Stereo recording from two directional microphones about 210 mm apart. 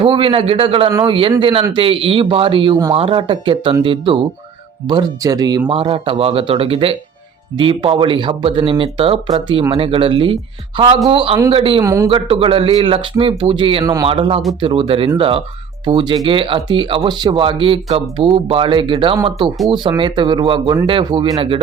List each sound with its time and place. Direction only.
0.0 s speech: 25° right (ahead or behind)
11.8 s a man's voice: 15° right (ahead or behind)
12.0 s speech: 25° right (ahead or behind)